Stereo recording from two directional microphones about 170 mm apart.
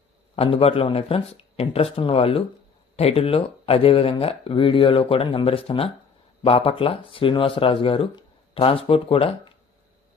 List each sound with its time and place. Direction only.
0.3 s speech: 35° left (ahead or behind)